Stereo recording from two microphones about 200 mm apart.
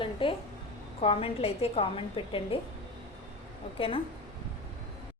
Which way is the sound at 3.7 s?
25° left (ahead or behind).